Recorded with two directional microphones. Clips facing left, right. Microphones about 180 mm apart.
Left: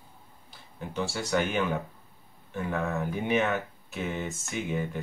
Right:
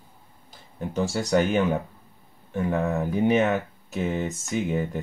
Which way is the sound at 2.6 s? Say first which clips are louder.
Right 5 dB; 20° right (ahead or behind).